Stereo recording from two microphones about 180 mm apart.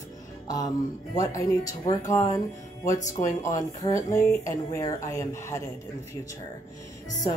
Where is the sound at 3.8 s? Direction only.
15° left (ahead or behind).